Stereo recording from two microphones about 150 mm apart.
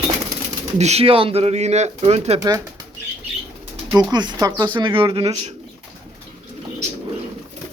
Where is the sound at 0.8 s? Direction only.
45° right (ahead or behind).